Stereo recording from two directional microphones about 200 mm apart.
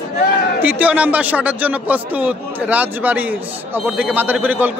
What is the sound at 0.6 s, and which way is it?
A man's voice, 10° right (ahead or behind).